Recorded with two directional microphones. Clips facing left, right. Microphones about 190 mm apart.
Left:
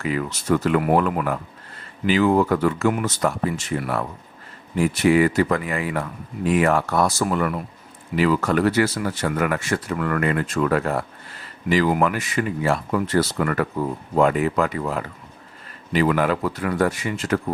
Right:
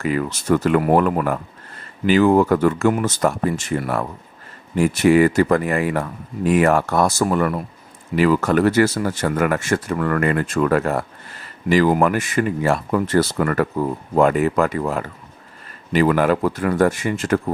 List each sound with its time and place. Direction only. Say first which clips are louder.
0.0 s speech: right 3 dB; 45° right (ahead or behind)